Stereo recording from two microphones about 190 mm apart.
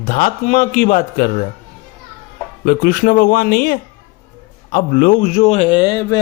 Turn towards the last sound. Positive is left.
turn(degrees=20)  # may be behind; listen again after turning